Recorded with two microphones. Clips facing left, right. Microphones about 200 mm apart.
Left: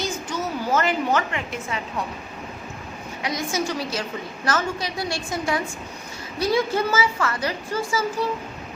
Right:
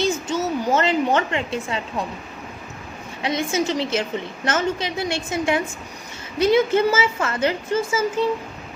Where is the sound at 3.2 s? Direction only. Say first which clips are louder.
Right 4 dB; 25° right (ahead or behind).